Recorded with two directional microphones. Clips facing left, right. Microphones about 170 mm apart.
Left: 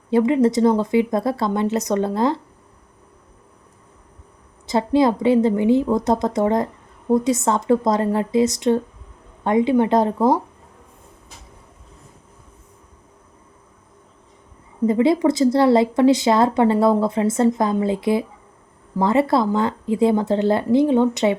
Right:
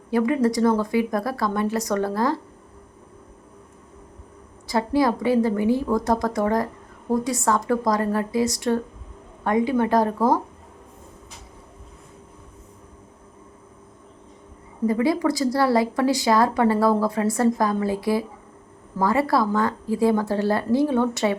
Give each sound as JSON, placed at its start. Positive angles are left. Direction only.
{"t": 0.1, "sound": "a woman's voice", "side_deg": 25}
{"t": 4.6, "sound": "a woman's voice", "side_deg": 20}
{"t": 14.8, "sound": "a woman's voice", "side_deg": 25}